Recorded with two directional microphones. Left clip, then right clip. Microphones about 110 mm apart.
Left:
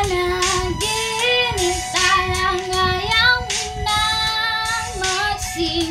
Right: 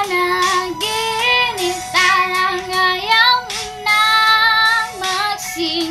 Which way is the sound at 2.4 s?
10° left (ahead or behind).